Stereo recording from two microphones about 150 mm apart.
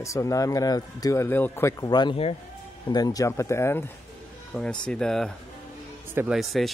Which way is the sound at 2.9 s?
25° left (ahead or behind).